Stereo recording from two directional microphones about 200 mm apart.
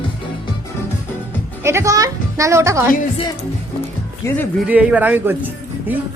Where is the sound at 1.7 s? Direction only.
15° right (ahead or behind).